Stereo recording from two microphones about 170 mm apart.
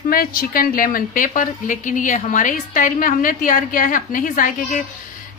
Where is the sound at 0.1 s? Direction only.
60° left (ahead or behind).